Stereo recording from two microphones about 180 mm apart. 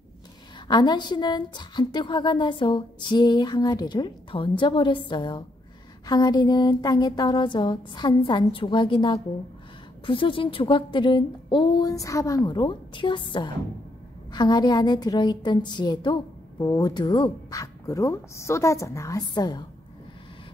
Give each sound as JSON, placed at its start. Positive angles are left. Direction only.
{"t": 0.7, "sound": "a woman's voice", "side_deg": 25}